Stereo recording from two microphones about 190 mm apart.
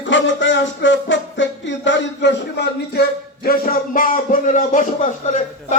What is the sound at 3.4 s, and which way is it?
Speech, 50° left (ahead or behind).